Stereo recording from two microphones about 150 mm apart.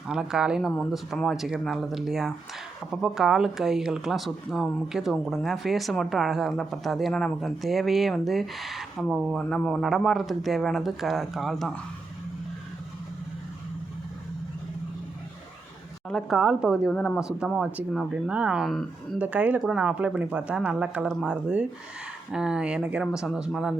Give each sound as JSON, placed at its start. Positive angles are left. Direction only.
{"t": 0.1, "sound": "speech", "side_deg": -5}
{"t": 16.0, "sound": "speech", "side_deg": 0}
{"t": 16.9, "sound": "speech", "side_deg": 5}
{"t": 19.2, "sound": "speech", "side_deg": -10}